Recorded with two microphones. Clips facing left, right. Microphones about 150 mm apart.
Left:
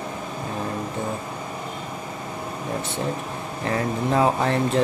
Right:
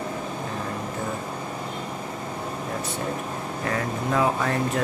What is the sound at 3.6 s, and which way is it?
Speech, 30° left (ahead or behind).